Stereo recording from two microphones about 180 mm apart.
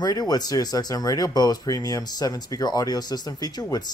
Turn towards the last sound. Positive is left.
turn(degrees=20)  # may be behind; listen again after turning